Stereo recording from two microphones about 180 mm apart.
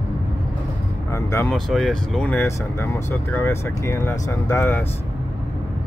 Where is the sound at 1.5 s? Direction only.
Centre (ahead or behind).